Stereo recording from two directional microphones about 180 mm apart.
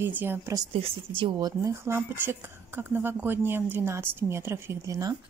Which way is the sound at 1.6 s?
15° right (ahead or behind).